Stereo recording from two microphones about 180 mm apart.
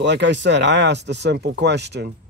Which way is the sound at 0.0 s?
75° right (ahead or behind).